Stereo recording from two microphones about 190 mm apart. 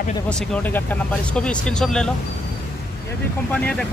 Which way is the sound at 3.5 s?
5° left (ahead or behind).